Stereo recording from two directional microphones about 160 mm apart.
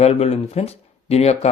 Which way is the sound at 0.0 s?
40° left (ahead or behind).